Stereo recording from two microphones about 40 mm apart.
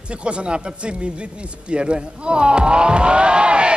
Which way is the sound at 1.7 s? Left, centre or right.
Right.